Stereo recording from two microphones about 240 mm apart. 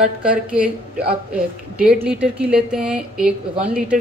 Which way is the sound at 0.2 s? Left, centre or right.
Centre.